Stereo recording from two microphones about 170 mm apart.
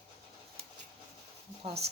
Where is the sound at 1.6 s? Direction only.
35° right (ahead or behind).